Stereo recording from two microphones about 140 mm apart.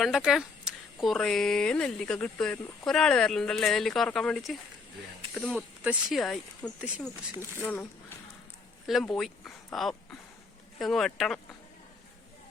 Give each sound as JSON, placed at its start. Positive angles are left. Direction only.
{"t": 0.0, "sound": "speech", "side_deg": -5}
{"t": 5.8, "sound": "speech", "side_deg": -10}
{"t": 6.1, "sound": "speech", "side_deg": 5}
{"t": 7.3, "sound": "speech", "side_deg": 15}
{"t": 8.9, "sound": "speech", "side_deg": 0}